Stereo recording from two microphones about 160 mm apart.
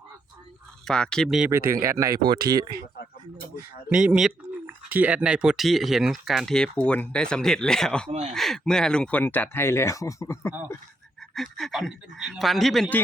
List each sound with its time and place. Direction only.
0.9 s speech: 5° left (ahead or behind)
1.5 s speech: 20° right (ahead or behind)
3.8 s speech: 5° right (ahead or behind)
8.1 s speech: 45° right (ahead or behind)
8.4 s speech: 5° left (ahead or behind); by 10.5 s 20° left (ahead or behind)
11.3 s speech: centre (ahead or behind)